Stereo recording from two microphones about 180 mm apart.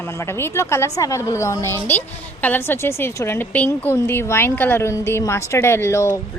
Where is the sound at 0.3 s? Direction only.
15° left (ahead or behind).